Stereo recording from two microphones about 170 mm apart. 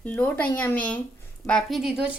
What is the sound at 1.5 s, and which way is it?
Speech, centre (ahead or behind).